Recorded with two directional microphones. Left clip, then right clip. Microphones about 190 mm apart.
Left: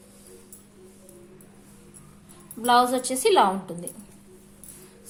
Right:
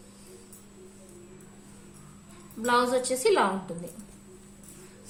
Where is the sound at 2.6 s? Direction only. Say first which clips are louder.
Left 4 dB; 30° left (ahead or behind).